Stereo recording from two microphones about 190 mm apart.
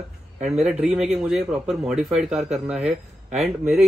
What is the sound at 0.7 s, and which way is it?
Speech, 5° right (ahead or behind).